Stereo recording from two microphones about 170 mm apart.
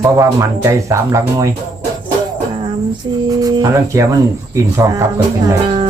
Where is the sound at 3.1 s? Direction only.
25° right (ahead or behind).